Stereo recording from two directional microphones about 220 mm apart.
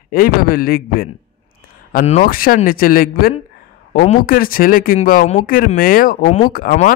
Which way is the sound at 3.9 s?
30° left (ahead or behind).